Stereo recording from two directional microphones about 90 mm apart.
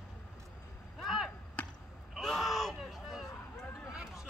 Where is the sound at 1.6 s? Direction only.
15° left (ahead or behind).